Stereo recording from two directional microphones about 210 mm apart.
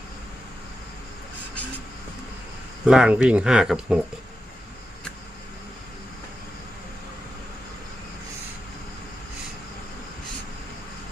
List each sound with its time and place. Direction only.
2.8 s speech: 5° right (ahead or behind)